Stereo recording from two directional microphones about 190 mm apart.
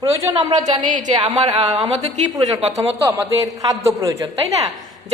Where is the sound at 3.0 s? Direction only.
15° right (ahead or behind).